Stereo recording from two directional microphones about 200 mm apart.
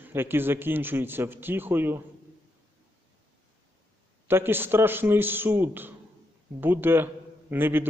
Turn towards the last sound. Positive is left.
turn(degrees=-10)  # may be behind; listen again after turning